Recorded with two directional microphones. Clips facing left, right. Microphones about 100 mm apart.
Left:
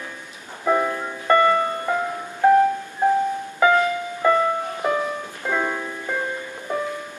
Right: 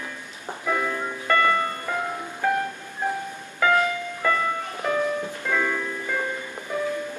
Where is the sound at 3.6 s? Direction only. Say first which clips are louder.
Left 4 dB; 15° left (ahead or behind).